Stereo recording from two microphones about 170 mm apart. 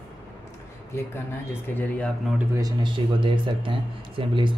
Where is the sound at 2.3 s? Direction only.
15° right (ahead or behind).